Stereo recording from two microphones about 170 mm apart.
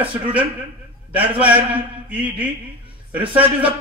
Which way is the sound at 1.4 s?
10° right (ahead or behind).